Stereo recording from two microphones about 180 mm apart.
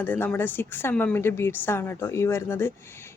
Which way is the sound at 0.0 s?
10° left (ahead or behind).